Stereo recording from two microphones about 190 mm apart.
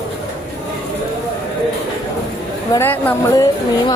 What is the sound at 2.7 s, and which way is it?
Speech, 10° left (ahead or behind).